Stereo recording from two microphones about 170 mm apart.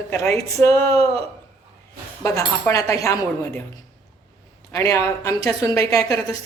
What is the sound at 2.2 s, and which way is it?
A woman's voice, 20° left (ahead or behind).